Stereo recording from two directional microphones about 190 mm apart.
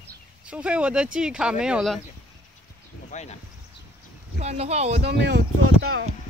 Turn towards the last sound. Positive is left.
turn(degrees=-90)